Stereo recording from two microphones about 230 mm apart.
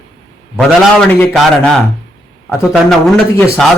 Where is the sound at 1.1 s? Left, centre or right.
Centre.